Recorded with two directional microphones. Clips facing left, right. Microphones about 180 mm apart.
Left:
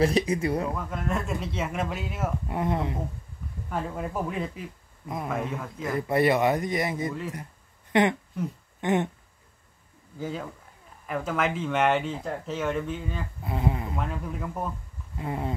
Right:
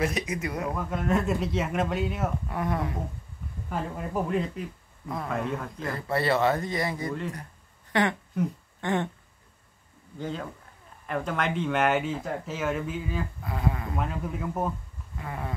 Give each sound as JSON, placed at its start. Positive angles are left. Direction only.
{"t": 0.0, "sound": "speech", "side_deg": 30}
{"t": 0.7, "sound": "speech", "side_deg": 0}
{"t": 2.4, "sound": "speech", "side_deg": 25}
{"t": 4.1, "sound": "speech", "side_deg": 0}
{"t": 5.0, "sound": "speech", "side_deg": 20}
{"t": 5.3, "sound": "speech", "side_deg": 0}
{"t": 5.9, "sound": "speech", "side_deg": 20}
{"t": 7.9, "sound": "a sound", "side_deg": 20}
{"t": 8.8, "sound": "speech", "side_deg": 20}
{"t": 10.1, "sound": "speech", "side_deg": 5}
{"t": 13.4, "sound": "speech", "side_deg": 20}
{"t": 13.9, "sound": "speech", "side_deg": -5}
{"t": 15.1, "sound": "speech", "side_deg": 25}